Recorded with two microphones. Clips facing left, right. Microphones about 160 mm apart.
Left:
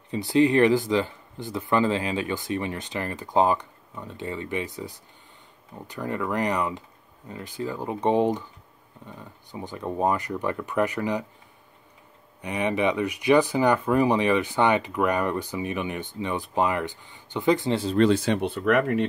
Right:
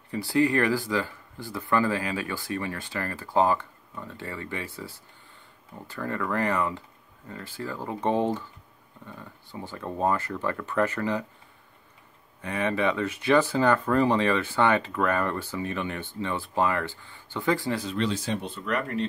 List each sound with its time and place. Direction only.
0.1 s speech: 20° left (ahead or behind)
12.4 s speech: 15° left (ahead or behind)
17.9 s speech: 60° left (ahead or behind)